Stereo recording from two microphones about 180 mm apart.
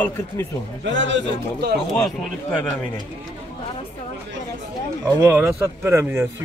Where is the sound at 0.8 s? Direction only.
90° right.